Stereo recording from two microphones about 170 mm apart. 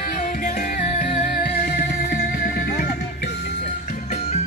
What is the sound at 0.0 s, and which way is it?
Music, 55° left (ahead or behind).